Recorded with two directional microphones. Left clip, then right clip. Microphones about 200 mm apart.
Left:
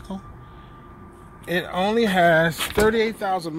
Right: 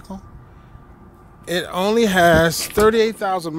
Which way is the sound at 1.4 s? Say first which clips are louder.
Right 2 dB; 15° right (ahead or behind).